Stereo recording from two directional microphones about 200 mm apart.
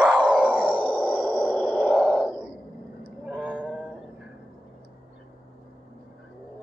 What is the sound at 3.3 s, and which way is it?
Cat, 5° left (ahead or behind).